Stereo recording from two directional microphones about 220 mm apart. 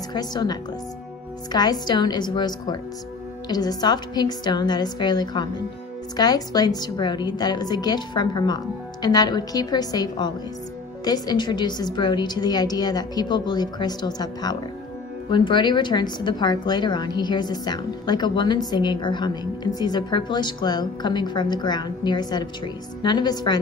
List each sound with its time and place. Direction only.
0.1 s a woman's voice: 20° left (ahead or behind)